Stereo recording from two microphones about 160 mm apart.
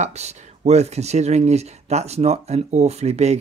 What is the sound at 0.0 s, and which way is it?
Speech, 45° right (ahead or behind).